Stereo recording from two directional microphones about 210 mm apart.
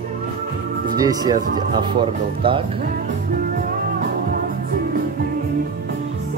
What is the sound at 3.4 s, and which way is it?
Music, 45° right (ahead or behind).